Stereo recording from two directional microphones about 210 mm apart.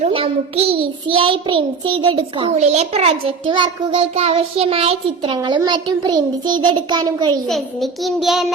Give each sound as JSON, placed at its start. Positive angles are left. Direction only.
{"t": 0.0, "sound": "a child's voice", "side_deg": -30}
{"t": 7.4, "sound": "child singing", "side_deg": 0}